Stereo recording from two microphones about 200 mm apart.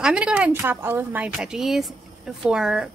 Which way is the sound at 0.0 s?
5° right (ahead or behind).